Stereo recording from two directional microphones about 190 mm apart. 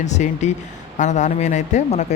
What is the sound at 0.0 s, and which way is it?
Speech, 40° left (ahead or behind).